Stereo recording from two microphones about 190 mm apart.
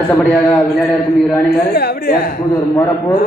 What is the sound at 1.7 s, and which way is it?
Speech, 55° left (ahead or behind).